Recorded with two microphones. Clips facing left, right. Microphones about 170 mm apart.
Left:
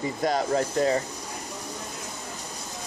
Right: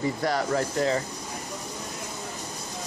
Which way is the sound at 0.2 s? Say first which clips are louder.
Left 5 dB; 20° left (ahead or behind).